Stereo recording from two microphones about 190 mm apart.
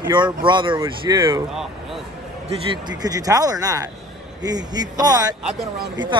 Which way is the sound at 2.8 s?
20° right (ahead or behind).